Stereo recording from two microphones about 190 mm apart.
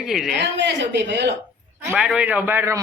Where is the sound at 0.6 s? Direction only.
65° right (ahead or behind).